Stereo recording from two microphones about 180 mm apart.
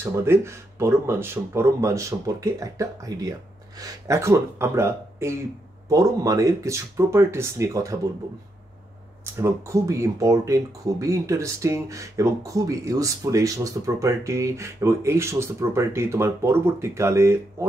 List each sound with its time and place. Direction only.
0.0 s speech: 15° right (ahead or behind)
9.2 s speech: 15° right (ahead or behind)